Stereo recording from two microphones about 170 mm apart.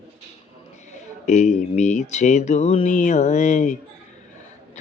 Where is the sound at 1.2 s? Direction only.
45° left (ahead or behind).